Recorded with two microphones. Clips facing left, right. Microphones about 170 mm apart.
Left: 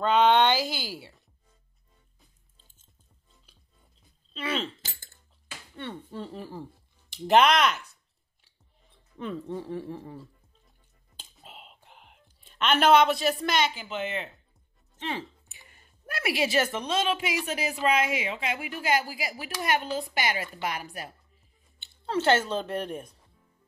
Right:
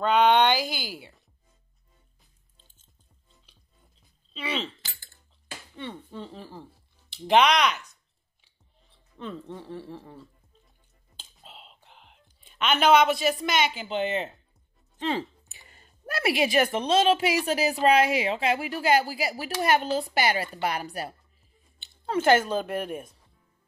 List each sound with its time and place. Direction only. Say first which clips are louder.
0.0 s speech: right 1 dB; centre (ahead or behind)
4.3 s speech: left 1 dB; centre (ahead or behind)
5.9 s speech: left 2 dB; 5° left (ahead or behind)
9.2 s speech: left 4 dB; 10° left (ahead or behind)
11.1 s whispering: left 1 dB; 5° left (ahead or behind)
13.5 s speech: right 1 dB; 5° right (ahead or behind)
13.7 s a woman's voice: right 5 dB; 30° right (ahead or behind)
15.7 s a sound: right 5 dB; 30° right (ahead or behind)
16.3 s a woman's voice: right 2 dB; 15° right (ahead or behind)
16.8 s a woman's voice: right 6 dB; 30° right (ahead or behind)
21.8 s a woman's voice: right 2 dB; 10° right (ahead or behind)